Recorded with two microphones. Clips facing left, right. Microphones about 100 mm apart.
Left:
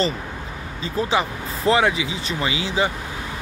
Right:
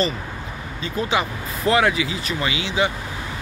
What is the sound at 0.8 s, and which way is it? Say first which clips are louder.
Speech: left 1 dB; 30° left (ahead or behind).